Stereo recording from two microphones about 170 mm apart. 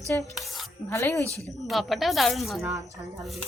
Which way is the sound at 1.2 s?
15° right (ahead or behind).